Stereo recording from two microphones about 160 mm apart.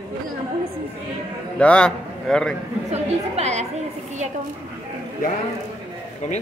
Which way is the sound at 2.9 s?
45° right (ahead or behind).